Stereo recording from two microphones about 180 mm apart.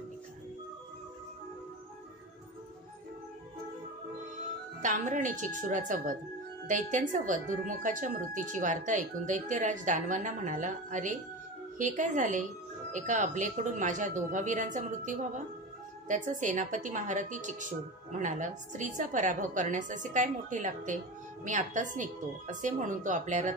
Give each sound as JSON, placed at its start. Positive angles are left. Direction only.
{"t": 4.8, "sound": "a woman's voice", "side_deg": -45}